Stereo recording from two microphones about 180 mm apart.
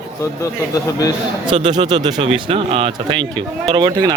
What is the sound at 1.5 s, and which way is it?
A man's voice, 25° right (ahead or behind).